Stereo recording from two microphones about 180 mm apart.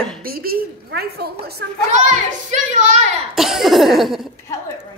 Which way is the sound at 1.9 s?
45° right (ahead or behind).